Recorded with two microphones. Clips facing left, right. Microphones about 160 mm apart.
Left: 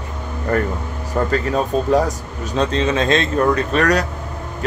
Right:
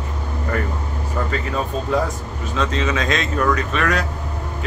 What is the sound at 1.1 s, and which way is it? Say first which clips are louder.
Speech: left 6 dB; 45° left (ahead or behind).